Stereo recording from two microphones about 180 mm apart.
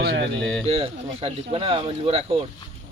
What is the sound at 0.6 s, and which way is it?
Speech, 30° right (ahead or behind).